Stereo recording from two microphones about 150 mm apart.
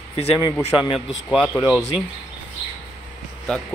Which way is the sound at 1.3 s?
5° right (ahead or behind).